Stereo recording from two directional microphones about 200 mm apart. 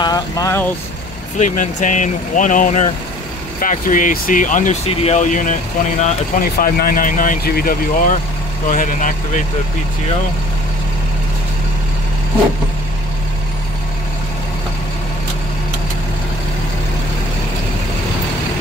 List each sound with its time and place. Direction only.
0.0 s speech: 20° left (ahead or behind)
1.4 s speech: 40° left (ahead or behind)